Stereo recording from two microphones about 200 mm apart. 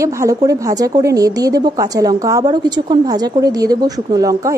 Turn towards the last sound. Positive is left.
turn(degrees=-15)  # may be behind; listen again after turning